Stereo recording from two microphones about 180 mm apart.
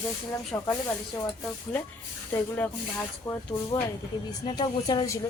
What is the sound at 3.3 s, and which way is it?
A woman's voice, 20° left (ahead or behind).